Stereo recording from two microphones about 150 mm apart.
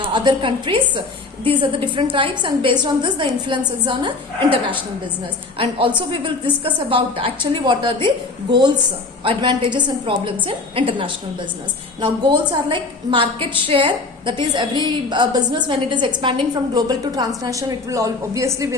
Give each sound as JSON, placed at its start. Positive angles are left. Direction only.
{"t": 0.0, "sound": "a woman's voice", "side_deg": -30}
{"t": 5.5, "sound": "a woman's voice", "side_deg": -35}